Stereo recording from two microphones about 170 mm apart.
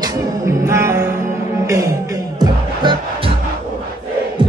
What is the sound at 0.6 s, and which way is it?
Music, 15° right (ahead or behind).